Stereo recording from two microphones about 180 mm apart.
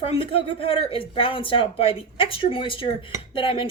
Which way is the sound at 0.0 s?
30° left (ahead or behind).